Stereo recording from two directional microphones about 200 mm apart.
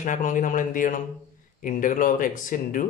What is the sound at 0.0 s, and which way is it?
A man's voice, 40° left (ahead or behind).